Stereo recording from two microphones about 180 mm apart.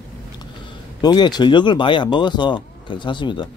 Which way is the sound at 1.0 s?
25° left (ahead or behind).